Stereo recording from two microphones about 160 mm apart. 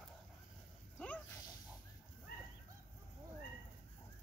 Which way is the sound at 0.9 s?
10° left (ahead or behind).